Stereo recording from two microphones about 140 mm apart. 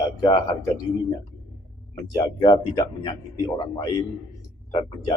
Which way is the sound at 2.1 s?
30° left (ahead or behind).